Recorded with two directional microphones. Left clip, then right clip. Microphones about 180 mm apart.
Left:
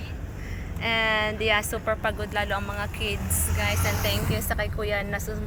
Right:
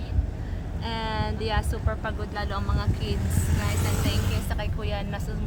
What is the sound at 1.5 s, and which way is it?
Speech, 5° left (ahead or behind).